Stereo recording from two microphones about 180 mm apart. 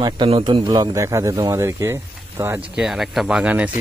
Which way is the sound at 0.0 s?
25° right (ahead or behind).